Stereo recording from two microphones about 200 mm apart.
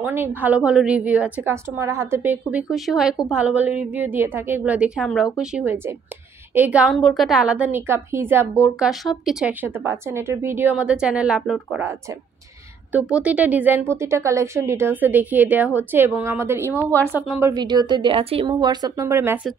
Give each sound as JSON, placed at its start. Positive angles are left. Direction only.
{"t": 0.0, "sound": "a woman's voice", "side_deg": -10}
{"t": 8.7, "sound": "a woman's voice", "side_deg": 0}
{"t": 12.9, "sound": "a woman's voice", "side_deg": -5}